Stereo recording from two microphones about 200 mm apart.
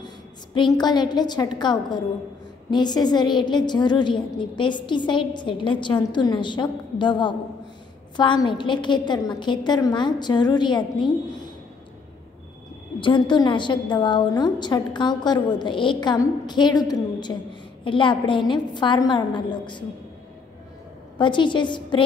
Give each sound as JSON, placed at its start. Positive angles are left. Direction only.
{"t": 0.7, "sound": "a woman's voice", "side_deg": 20}
{"t": 13.0, "sound": "a woman's voice", "side_deg": 25}
{"t": 21.2, "sound": "a woman's voice", "side_deg": 25}